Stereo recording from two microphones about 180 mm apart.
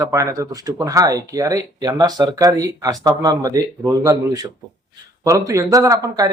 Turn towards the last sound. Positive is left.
turn(degrees=-20)  # may be behind; listen again after turning